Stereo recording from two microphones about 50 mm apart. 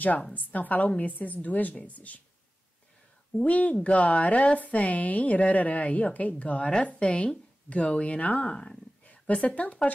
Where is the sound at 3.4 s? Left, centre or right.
Left.